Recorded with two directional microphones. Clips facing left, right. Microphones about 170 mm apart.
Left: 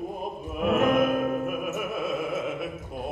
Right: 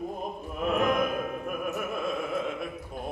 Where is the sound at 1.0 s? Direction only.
45° left (ahead or behind).